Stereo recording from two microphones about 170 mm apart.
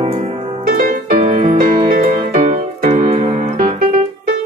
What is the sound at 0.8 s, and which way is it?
Music, 55° right (ahead or behind).